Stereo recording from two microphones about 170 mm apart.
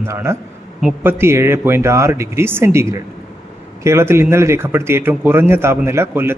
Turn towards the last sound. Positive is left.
turn(degrees=-15)  # may be behind; listen again after turning